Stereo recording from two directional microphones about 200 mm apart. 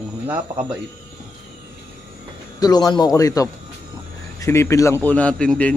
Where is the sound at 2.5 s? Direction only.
20° left (ahead or behind).